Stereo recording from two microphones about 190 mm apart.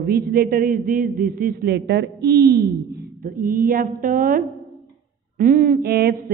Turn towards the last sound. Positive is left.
turn(degrees=-55)  # may be behind; listen again after turning